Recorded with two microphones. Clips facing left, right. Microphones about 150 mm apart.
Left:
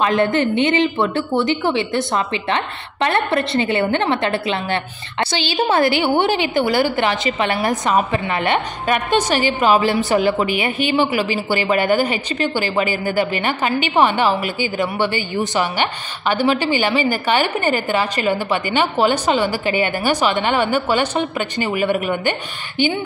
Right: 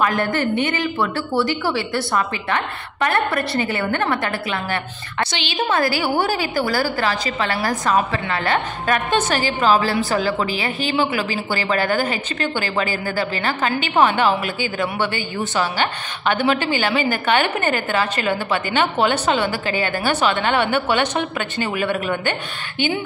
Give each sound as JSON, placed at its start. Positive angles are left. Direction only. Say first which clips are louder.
{"t": 0.0, "sound": "a woman's voice", "louder": "left 3 dB", "side_deg": 25}
{"t": 8.8, "sound": "a woman's voice", "louder": "left 2 dB", "side_deg": 10}
{"t": 15.5, "sound": "a woman's voice", "louder": "right 2 dB", "side_deg": 15}